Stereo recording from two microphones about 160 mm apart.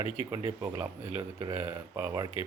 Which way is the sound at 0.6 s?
10° right (ahead or behind).